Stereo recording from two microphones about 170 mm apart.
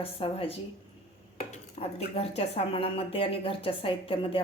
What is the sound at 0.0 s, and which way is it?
Speech, 35° left (ahead or behind).